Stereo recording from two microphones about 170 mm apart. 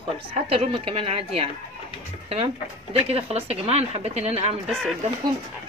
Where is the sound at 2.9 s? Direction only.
35° right (ahead or behind).